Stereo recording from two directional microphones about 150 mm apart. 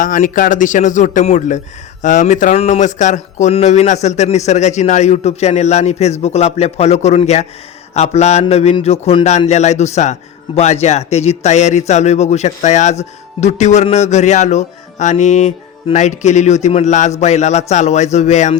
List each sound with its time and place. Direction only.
0.0 s speech: 60° left (ahead or behind)